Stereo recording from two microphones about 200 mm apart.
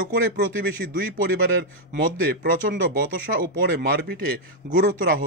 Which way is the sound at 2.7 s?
45° right (ahead or behind).